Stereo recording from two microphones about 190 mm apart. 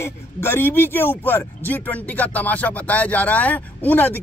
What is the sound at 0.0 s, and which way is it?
Speech, 10° left (ahead or behind).